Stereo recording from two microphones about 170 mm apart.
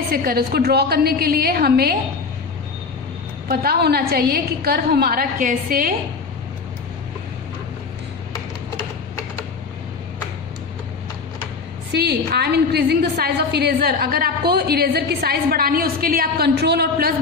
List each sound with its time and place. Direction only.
0.1 s a woman's voice: 60° right (ahead or behind)
3.4 s a woman's voice: 65° right (ahead or behind)
11.9 s a woman's voice: 75° right (ahead or behind)